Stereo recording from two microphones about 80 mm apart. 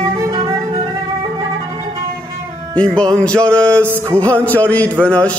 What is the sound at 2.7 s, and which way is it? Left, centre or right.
Music, centre.